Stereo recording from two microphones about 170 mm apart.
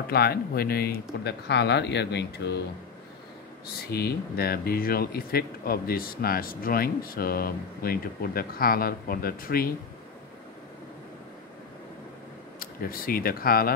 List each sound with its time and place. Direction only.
0.1 s speech: 70° left (ahead or behind)
1.2 s speech: 90° left
3.9 s speech: 65° left (ahead or behind)
12.5 s speech: 60° left (ahead or behind)